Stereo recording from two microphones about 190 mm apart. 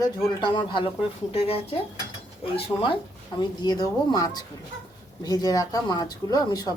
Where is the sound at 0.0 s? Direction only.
25° left (ahead or behind).